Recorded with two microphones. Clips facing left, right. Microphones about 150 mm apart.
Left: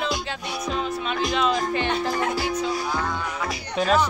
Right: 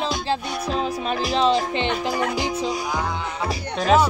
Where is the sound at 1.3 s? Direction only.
30° right (ahead or behind).